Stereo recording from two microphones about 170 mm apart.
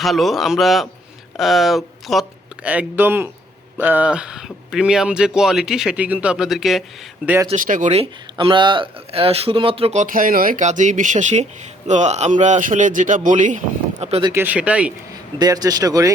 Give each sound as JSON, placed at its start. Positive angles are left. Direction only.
{"t": 0.0, "sound": "speech", "side_deg": 0}
{"t": 7.5, "sound": "speech", "side_deg": -50}
{"t": 14.0, "sound": "speech", "side_deg": -35}
{"t": 14.3, "sound": "speech", "side_deg": -10}
{"t": 15.4, "sound": "speech", "side_deg": -20}